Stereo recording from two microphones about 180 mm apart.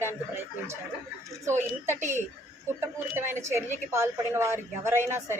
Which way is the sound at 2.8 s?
15° right (ahead or behind).